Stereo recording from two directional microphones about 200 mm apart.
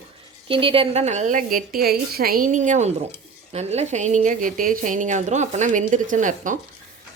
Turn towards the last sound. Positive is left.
turn(degrees=-40)  # may be behind; listen again after turning